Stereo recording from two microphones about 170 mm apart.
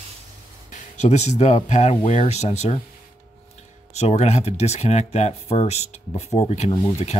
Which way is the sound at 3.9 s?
40° left (ahead or behind).